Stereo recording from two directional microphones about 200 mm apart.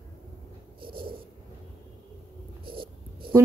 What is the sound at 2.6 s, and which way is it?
Wheeze, 25° right (ahead or behind).